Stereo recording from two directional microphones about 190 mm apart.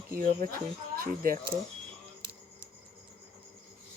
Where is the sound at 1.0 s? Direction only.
50° right (ahead or behind).